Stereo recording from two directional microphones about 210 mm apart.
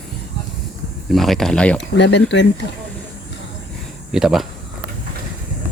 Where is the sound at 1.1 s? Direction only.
Centre (ahead or behind).